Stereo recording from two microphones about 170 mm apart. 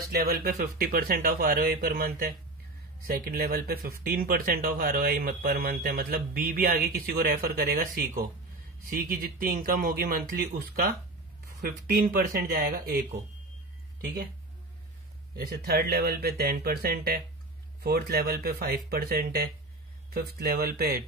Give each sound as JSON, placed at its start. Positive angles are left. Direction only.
{"t": 0.1, "sound": "speech", "side_deg": -60}
{"t": 15.3, "sound": "speech", "side_deg": -60}